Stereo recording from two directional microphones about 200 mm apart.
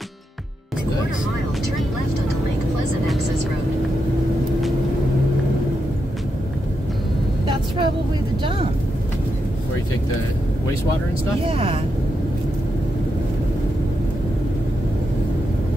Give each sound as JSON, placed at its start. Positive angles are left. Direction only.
{"t": 7.4, "sound": "vehicle", "side_deg": -25}
{"t": 11.4, "sound": "speech", "side_deg": -25}